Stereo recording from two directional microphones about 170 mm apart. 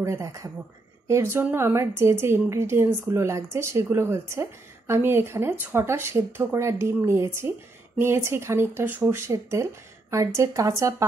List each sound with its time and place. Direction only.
0.0 s speech: 15° right (ahead or behind)